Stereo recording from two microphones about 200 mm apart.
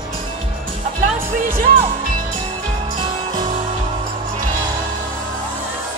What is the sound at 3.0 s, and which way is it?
Music, 25° right (ahead or behind).